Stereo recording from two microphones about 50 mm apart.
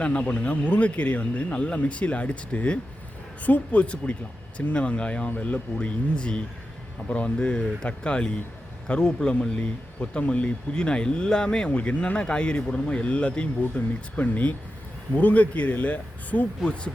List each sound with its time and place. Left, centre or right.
0.0 s speech: left
9.3 s speech: left
16.6 s speech: left